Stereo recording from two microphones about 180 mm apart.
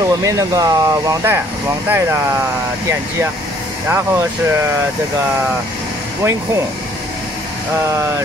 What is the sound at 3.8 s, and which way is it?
Speech, 10° right (ahead or behind).